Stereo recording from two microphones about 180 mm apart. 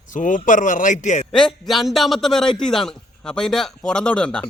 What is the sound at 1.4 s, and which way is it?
A man's voice, centre (ahead or behind).